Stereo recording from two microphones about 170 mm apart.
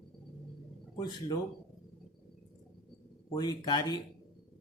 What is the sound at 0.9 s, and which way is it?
Speech, 25° left (ahead or behind).